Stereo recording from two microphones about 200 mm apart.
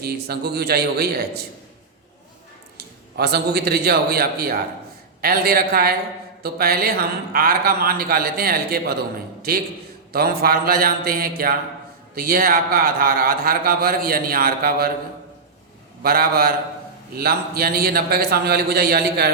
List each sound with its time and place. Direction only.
0.0 s speech: 50° right (ahead or behind)
2.7 s a man's voice: 55° right (ahead or behind)
16.0 s speech: 50° right (ahead or behind)